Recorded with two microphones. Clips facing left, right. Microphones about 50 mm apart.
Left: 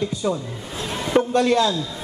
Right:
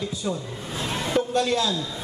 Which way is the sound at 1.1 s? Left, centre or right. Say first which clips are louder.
Left 6 dB; left.